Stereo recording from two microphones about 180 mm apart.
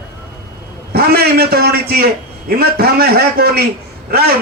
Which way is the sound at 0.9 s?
60° right (ahead or behind).